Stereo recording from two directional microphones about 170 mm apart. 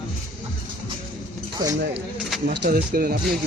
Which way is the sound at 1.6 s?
25° right (ahead or behind).